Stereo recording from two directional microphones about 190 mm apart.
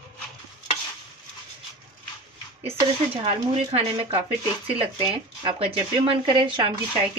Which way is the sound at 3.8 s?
30° right (ahead or behind).